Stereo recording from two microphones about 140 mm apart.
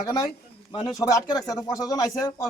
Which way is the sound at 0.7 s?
30° left (ahead or behind).